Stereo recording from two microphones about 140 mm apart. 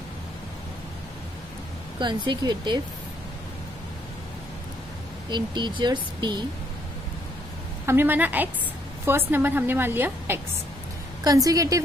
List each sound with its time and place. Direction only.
2.0 s speech: 35° right (ahead or behind)
5.3 s speech: 35° right (ahead or behind)
7.8 s a woman's voice: 15° right (ahead or behind)